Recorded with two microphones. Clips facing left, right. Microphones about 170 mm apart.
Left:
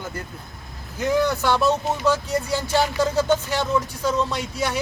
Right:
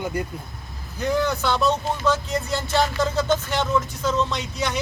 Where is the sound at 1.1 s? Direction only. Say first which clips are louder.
Left 2 dB; 15° left (ahead or behind).